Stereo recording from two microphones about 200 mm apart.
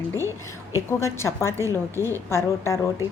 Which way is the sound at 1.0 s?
15° left (ahead or behind).